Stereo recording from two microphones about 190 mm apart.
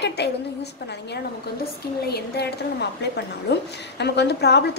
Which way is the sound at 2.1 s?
60° left (ahead or behind).